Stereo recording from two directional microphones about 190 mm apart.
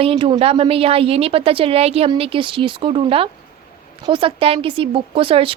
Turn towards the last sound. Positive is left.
turn(degrees=-30)  # may be behind; listen again after turning